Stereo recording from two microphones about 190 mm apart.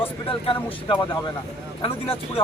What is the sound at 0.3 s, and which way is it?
A man's voice, 30° left (ahead or behind).